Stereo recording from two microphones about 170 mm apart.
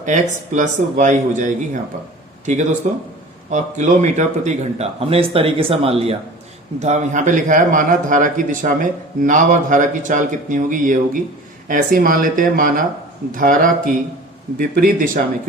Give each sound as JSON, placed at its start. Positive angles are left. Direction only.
{"t": 0.0, "sound": "a man's voice", "side_deg": -45}
{"t": 14.6, "sound": "speech", "side_deg": -55}